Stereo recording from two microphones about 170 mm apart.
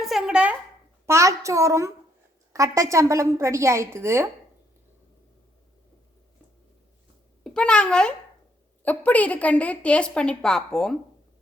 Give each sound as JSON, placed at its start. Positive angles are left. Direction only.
{"t": 0.0, "sound": "a sound", "side_deg": 0}
{"t": 1.0, "sound": "a woman's voice", "side_deg": -15}
{"t": 7.4, "sound": "a child's voice", "side_deg": 5}